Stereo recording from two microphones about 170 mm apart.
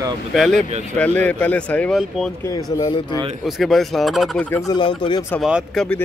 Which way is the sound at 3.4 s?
Centre (ahead or behind).